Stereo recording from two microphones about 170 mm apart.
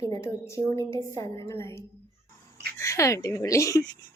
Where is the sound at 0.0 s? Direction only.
15° left (ahead or behind).